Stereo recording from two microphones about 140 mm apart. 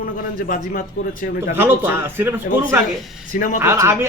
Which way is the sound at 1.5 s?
15° right (ahead or behind).